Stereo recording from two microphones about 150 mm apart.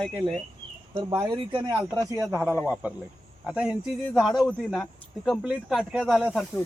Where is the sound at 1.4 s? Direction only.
35° right (ahead or behind).